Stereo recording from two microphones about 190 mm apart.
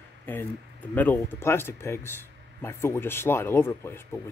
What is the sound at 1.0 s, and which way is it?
Speech, 10° left (ahead or behind).